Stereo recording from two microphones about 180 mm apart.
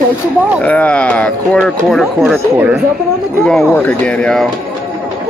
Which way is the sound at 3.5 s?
5° left (ahead or behind).